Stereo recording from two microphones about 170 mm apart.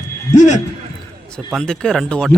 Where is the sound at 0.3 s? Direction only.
45° left (ahead or behind).